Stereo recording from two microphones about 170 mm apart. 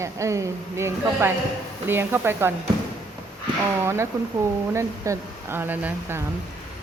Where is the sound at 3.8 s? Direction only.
15° right (ahead or behind).